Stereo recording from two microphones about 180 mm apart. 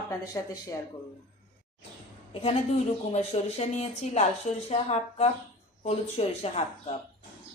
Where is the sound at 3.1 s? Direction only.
35° left (ahead or behind).